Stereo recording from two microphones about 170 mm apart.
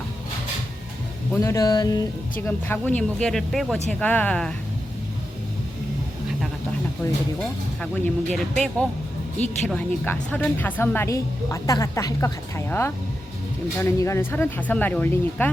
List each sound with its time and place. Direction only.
1.4 s music: 20° left (ahead or behind)
2.5 s a woman's voice: 10° left (ahead or behind)
7.8 s a woman's voice: 5° left (ahead or behind)